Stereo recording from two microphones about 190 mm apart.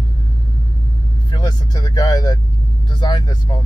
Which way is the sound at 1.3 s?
20° left (ahead or behind).